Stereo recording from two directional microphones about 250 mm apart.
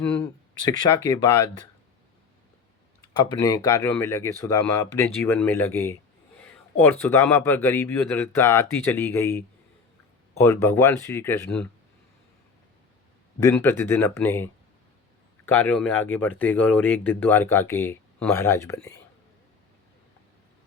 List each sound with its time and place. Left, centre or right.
0.6 s speech: centre
3.0 s speech: centre
6.4 s a sound: centre
7.0 s speech: centre
13.4 s speech: centre